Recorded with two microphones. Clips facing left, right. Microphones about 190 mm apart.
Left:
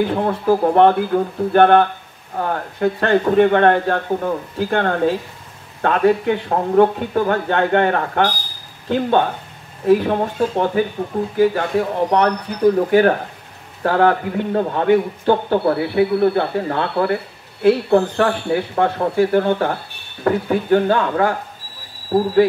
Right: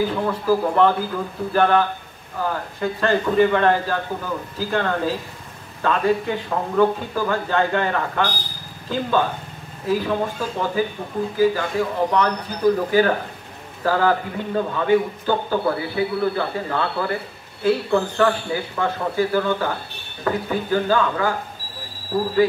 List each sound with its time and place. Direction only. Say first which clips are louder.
0.5 s speech: left 5 dB; 60° left (ahead or behind)